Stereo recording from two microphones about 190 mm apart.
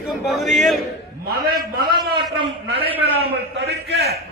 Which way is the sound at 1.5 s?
55° right (ahead or behind).